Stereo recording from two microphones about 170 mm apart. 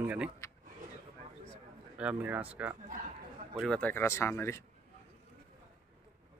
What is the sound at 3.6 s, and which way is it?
Speech, 5° left (ahead or behind).